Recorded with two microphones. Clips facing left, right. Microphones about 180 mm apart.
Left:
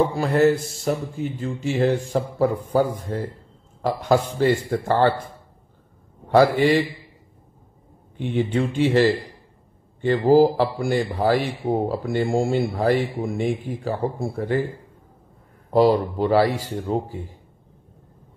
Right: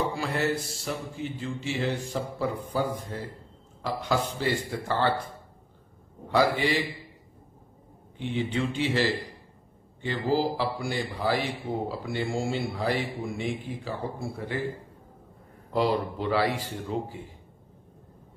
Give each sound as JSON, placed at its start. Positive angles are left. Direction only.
{"t": 0.1, "sound": "speech", "side_deg": 45}
{"t": 6.3, "sound": "speech", "side_deg": 50}
{"t": 8.2, "sound": "speech", "side_deg": 50}
{"t": 15.7, "sound": "speech", "side_deg": 40}